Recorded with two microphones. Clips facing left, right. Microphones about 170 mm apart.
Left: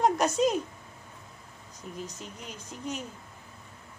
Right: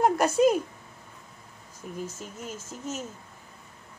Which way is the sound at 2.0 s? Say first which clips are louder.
Right 4 dB; 45° right (ahead or behind).